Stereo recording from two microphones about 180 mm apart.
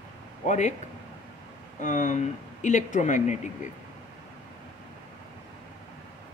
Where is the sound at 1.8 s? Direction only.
45° left (ahead or behind).